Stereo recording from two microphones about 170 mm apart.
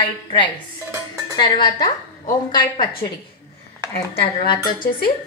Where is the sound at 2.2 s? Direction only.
50° left (ahead or behind).